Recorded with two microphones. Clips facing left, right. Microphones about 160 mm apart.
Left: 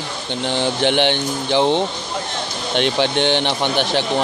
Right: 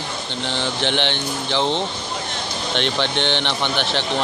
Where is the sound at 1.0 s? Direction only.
15° left (ahead or behind).